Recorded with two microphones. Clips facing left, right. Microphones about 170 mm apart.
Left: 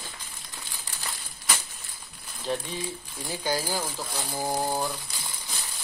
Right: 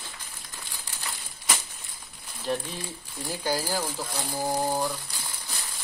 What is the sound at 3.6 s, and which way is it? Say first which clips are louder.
Speech: right 1 dB; 10° left (ahead or behind).